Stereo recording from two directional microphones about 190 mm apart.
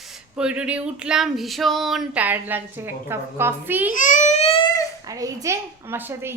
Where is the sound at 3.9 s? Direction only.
40° left (ahead or behind).